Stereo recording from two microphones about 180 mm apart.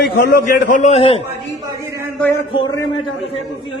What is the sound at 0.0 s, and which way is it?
A man's voice, 60° left (ahead or behind).